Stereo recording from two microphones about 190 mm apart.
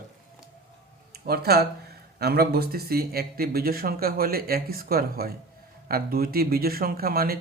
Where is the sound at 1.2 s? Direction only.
55° right (ahead or behind).